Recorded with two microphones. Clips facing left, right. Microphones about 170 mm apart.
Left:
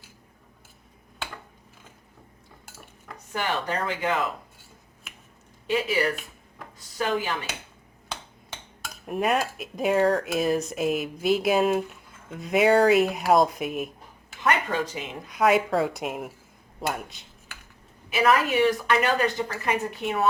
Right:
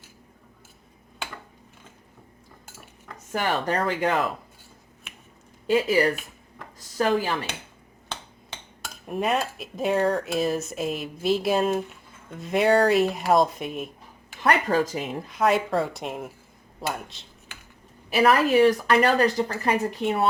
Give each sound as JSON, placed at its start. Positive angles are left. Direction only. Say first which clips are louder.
{"t": 3.3, "sound": "a woman's voice", "louder": "right 3 dB", "side_deg": -40}
{"t": 5.6, "sound": "a woman's voice", "louder": "right 4 dB", "side_deg": -40}
{"t": 6.7, "sound": "a sound", "louder": "right 4 dB", "side_deg": -40}
{"t": 9.0, "sound": "speech", "louder": "even", "side_deg": 0}
{"t": 14.4, "sound": "a woman's voice", "louder": "right 3 dB", "side_deg": -35}
{"t": 15.3, "sound": "speech", "louder": "left 1 dB", "side_deg": 0}
{"t": 18.1, "sound": "a woman's voice", "louder": "right 3 dB", "side_deg": -35}